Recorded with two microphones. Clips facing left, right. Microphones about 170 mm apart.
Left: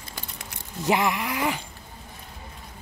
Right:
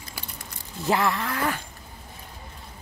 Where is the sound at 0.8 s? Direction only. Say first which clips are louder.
Left 1 dB; 15° left (ahead or behind).